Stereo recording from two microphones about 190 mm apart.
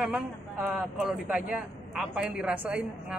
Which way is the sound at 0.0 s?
5° right (ahead or behind).